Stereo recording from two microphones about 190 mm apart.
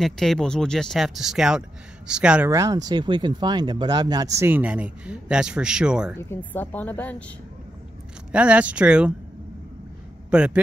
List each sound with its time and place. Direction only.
0.0 s speech: centre (ahead or behind)
2.5 s speech: 20° right (ahead or behind)
6.1 s a woman's voice: 10° left (ahead or behind)
8.3 s speech: 5° right (ahead or behind)
10.3 s speech: 5° right (ahead or behind)